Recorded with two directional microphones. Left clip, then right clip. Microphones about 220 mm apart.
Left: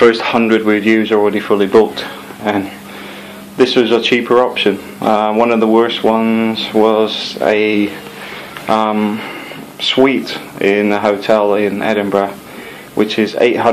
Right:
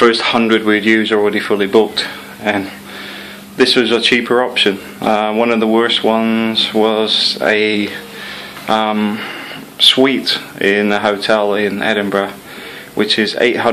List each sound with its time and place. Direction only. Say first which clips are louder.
0.0 s speech: left 1 dB; 10° right (ahead or behind)